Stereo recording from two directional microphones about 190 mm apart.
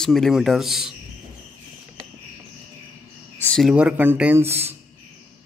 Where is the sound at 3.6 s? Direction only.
5° right (ahead or behind).